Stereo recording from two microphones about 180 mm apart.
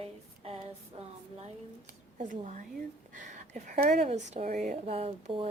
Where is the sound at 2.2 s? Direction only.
45° right (ahead or behind).